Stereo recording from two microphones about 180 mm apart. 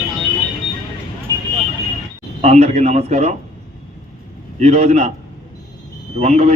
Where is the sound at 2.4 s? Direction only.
35° right (ahead or behind).